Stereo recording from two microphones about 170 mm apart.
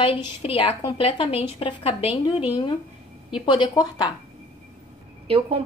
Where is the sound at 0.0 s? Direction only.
30° left (ahead or behind).